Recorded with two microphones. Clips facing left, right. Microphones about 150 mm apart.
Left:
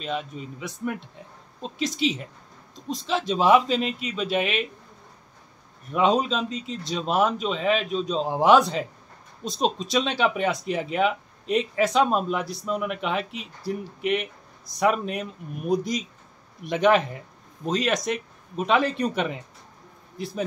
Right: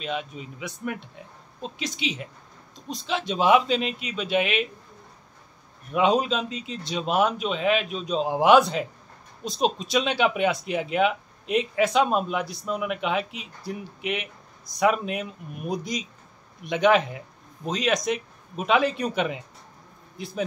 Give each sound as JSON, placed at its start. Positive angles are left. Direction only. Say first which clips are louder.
{"t": 0.0, "sound": "speech", "louder": "left 1 dB", "side_deg": 0}
{"t": 5.9, "sound": "speech", "louder": "even", "side_deg": -5}